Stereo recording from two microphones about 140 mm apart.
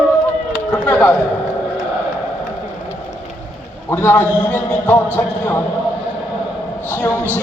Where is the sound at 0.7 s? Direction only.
15° left (ahead or behind).